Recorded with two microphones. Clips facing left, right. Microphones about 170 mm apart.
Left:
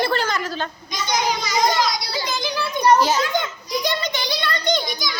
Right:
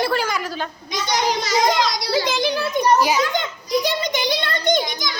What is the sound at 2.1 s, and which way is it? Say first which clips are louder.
Speech: right 6 dB; 85° right.